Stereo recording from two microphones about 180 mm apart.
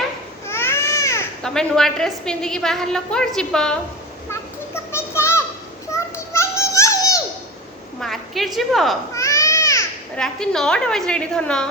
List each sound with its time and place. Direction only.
0.4 s baby cry: 15° left (ahead or behind)
1.4 s a woman's voice: 5° left (ahead or behind)
4.3 s children playing: 15° left (ahead or behind)
8.0 s a woman's voice: centre (ahead or behind)
9.1 s baby cry: 15° left (ahead or behind)
10.2 s a woman's voice: 5° left (ahead or behind)